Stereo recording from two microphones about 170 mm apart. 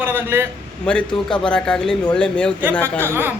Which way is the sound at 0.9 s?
5° left (ahead or behind).